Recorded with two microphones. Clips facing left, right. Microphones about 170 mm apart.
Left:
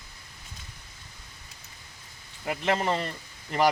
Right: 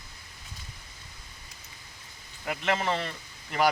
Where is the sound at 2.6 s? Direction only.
40° left (ahead or behind).